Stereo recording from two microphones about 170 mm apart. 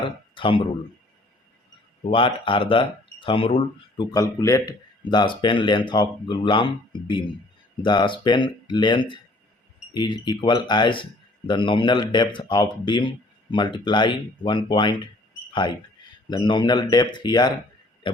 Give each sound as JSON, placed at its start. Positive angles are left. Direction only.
{"t": 0.0, "sound": "speech", "side_deg": 30}
{"t": 2.0, "sound": "speech", "side_deg": 30}
{"t": 4.1, "sound": "speech", "side_deg": 20}
{"t": 7.8, "sound": "speech", "side_deg": 25}
{"t": 16.3, "sound": "speech", "side_deg": 25}